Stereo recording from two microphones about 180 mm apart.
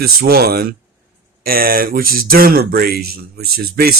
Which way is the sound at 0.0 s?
55° right (ahead or behind).